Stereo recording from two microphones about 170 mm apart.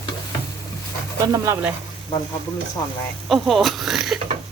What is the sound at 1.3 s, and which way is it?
Speech, 15° right (ahead or behind).